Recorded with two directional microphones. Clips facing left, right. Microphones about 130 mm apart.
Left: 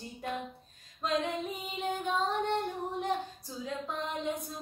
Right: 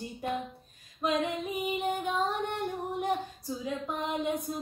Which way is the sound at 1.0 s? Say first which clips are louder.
Right 2 dB; 10° right (ahead or behind).